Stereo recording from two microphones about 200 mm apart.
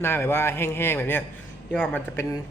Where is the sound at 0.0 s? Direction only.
10° left (ahead or behind).